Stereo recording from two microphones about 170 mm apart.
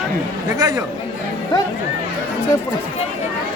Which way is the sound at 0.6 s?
20° right (ahead or behind).